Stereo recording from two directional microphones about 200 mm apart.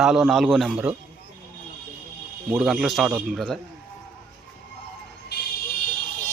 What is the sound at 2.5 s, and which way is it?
Speech, 5° right (ahead or behind).